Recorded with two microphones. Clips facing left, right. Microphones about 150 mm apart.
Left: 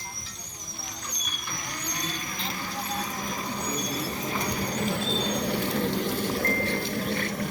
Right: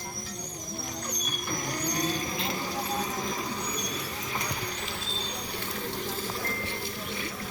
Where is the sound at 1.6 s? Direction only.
40° right (ahead or behind).